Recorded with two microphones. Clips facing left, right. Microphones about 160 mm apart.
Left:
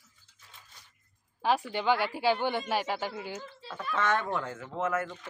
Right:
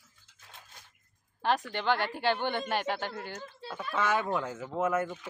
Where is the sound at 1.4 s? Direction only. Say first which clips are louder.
Left 1 dB; 5° left (ahead or behind).